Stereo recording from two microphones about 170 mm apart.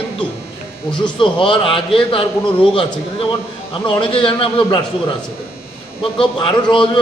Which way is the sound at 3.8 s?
30° left (ahead or behind).